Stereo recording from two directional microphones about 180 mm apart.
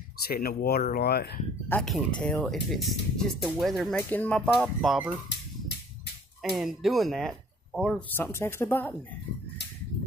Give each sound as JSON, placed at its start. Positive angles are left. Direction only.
{"t": 0.2, "sound": "speech", "side_deg": 55}
{"t": 1.7, "sound": "speech", "side_deg": 5}
{"t": 6.5, "sound": "speech", "side_deg": 0}
{"t": 8.1, "sound": "speech", "side_deg": 10}